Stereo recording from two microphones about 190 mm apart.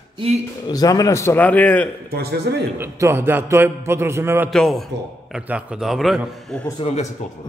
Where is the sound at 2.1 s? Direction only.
60° right (ahead or behind).